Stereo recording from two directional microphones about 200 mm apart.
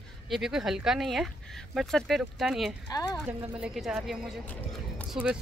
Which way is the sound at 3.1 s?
5° right (ahead or behind).